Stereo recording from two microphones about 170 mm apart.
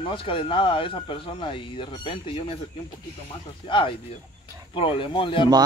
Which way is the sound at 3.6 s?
30° left (ahead or behind).